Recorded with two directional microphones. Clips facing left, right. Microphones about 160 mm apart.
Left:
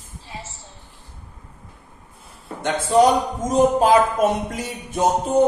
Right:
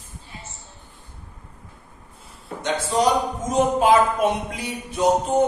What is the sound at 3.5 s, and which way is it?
Music, 40° left (ahead or behind).